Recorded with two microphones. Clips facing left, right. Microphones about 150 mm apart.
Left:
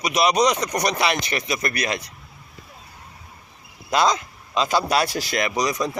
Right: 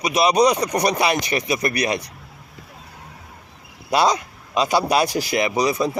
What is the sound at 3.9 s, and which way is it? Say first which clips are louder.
Speech: right 2 dB; 15° right (ahead or behind).